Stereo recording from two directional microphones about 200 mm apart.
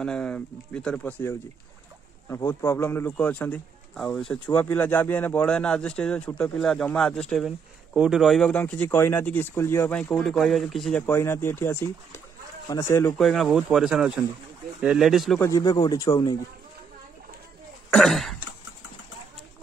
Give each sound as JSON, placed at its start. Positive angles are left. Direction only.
{"t": 0.0, "sound": "speech", "side_deg": 5}
{"t": 11.1, "sound": "speech", "side_deg": 10}
{"t": 13.2, "sound": "speech", "side_deg": 0}
{"t": 15.4, "sound": "speech", "side_deg": 20}
{"t": 17.9, "sound": "speech", "side_deg": 0}